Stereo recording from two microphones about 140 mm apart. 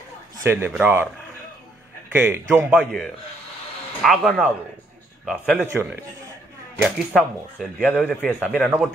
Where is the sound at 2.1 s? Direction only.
15° right (ahead or behind).